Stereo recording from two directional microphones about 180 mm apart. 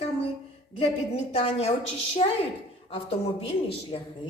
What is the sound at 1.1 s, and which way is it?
A woman's voice, 30° left (ahead or behind).